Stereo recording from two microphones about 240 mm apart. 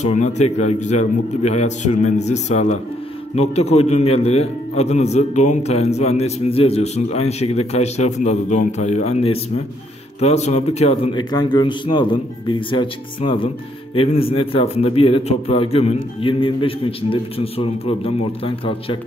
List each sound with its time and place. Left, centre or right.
0.0 s a man's voice: left